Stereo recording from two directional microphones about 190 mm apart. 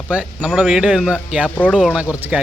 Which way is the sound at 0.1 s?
5° right (ahead or behind).